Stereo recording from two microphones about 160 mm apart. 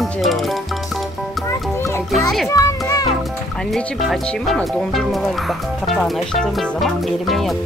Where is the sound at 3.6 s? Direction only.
Centre (ahead or behind).